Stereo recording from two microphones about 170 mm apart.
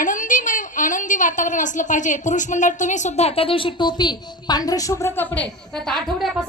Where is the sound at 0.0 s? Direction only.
50° left (ahead or behind); by 6.4 s centre (ahead or behind).